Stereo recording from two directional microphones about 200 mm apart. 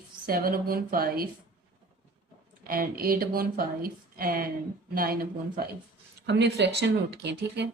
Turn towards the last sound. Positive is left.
turn(degrees=-60)  # may be behind; listen again after turning